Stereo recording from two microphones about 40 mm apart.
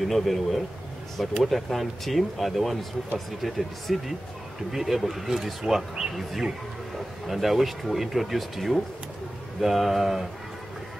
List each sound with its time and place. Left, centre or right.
0.0 s speech: centre